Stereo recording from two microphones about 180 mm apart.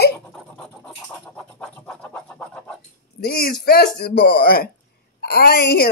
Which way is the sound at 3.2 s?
55° left (ahead or behind).